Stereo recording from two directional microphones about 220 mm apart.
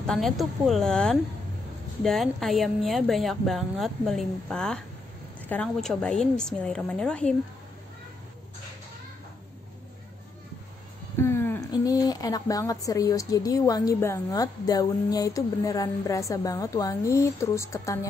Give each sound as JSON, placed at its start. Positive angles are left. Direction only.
{"t": 0.0, "sound": "a woman's voice", "side_deg": 0}
{"t": 11.1, "sound": "a woman's voice", "side_deg": 10}